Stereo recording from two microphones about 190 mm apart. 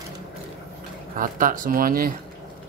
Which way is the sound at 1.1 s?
45° right (ahead or behind).